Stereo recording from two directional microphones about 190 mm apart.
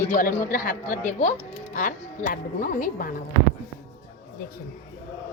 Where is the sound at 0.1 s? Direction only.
50° left (ahead or behind).